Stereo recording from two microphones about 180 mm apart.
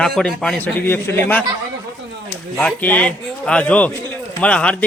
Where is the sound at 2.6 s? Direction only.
10° left (ahead or behind).